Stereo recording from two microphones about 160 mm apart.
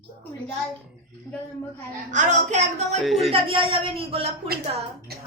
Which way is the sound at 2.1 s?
50° right (ahead or behind).